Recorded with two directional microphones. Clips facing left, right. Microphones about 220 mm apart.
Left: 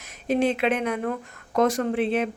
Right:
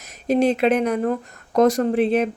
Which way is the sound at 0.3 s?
40° right (ahead or behind).